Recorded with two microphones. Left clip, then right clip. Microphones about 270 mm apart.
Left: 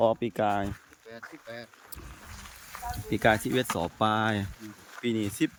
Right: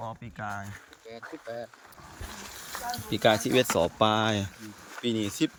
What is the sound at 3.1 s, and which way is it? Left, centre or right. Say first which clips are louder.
Speech: right 1 dB; centre.